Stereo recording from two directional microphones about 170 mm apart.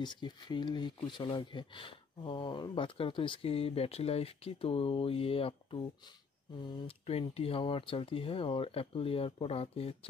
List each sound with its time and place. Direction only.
0.0 s speech: 25° left (ahead or behind)